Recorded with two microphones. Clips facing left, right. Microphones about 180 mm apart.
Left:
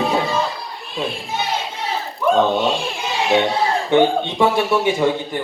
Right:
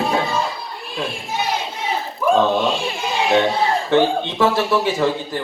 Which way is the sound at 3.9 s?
20° left (ahead or behind).